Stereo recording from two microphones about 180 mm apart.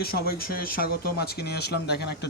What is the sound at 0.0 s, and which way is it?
Speech, 60° left (ahead or behind).